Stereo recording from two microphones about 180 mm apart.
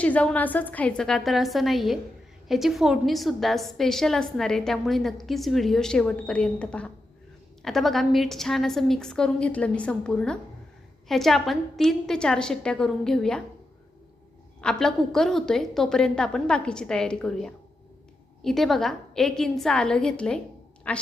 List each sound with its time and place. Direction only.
0.0 s a woman's voice: 5° left (ahead or behind)
14.6 s a woman's voice: 5° left (ahead or behind)